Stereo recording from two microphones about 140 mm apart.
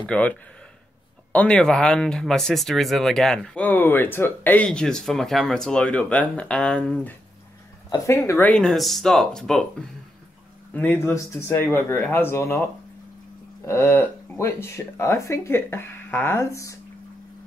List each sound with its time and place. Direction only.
0.0 s speech: 5° left (ahead or behind)
1.3 s speech: 10° left (ahead or behind)
7.9 s speech: 20° left (ahead or behind)
13.7 s speech: 20° left (ahead or behind)